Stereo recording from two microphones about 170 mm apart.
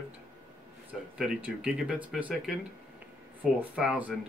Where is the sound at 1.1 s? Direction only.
5° right (ahead or behind).